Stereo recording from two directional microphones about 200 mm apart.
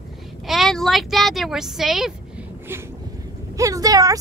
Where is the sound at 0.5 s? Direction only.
Centre (ahead or behind).